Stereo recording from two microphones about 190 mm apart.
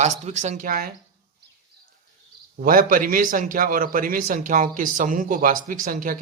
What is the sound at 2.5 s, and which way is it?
Speech, 50° right (ahead or behind).